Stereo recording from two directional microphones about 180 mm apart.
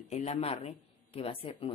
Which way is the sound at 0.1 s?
35° left (ahead or behind).